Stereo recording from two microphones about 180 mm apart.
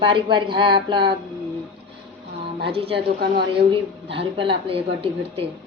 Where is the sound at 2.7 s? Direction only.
30° right (ahead or behind).